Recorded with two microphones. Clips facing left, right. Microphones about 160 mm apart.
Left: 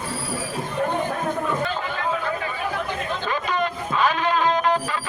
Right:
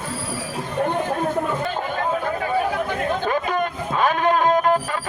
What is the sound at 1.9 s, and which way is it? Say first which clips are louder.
Chatter: right 4 dB; 45° right (ahead or behind).